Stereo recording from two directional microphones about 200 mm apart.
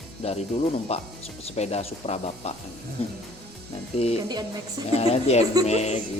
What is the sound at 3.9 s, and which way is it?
Speech, 30° left (ahead or behind).